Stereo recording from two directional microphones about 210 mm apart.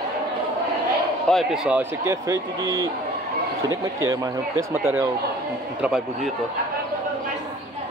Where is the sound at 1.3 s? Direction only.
Centre (ahead or behind).